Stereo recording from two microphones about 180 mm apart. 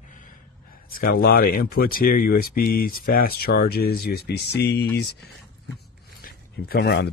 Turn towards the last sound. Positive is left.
turn(degrees=65)  # may be behind; listen again after turning